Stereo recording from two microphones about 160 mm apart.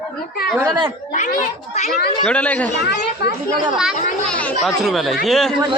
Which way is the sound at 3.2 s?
90° left.